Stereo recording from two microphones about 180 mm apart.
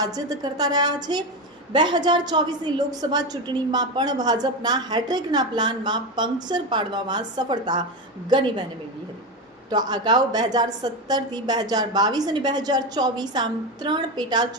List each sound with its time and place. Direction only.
0.0 s a woman's voice: 20° right (ahead or behind)
9.6 s a woman's voice: 20° right (ahead or behind)